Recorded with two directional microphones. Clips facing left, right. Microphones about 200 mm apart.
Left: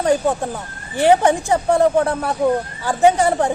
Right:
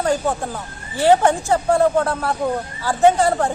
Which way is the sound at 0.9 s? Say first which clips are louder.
Left 1 dB; 20° left (ahead or behind).